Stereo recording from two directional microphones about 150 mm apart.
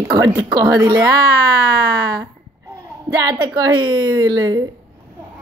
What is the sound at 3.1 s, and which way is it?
Speech, 25° right (ahead or behind).